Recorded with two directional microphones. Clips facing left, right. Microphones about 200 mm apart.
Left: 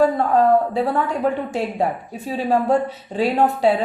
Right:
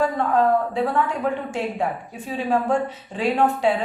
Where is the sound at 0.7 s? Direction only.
35° left (ahead or behind).